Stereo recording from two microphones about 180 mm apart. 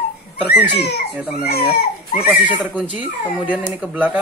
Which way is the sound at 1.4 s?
60° left (ahead or behind).